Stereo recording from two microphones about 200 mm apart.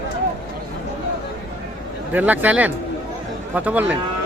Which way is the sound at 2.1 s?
10° right (ahead or behind).